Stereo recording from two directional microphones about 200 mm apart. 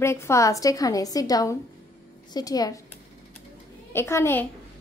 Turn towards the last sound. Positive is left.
turn(degrees=10)  # may be behind; listen again after turning